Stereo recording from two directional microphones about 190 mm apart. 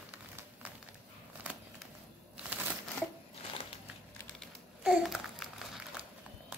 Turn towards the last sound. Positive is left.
turn(degrees=0)  # may be behind; listen again after turning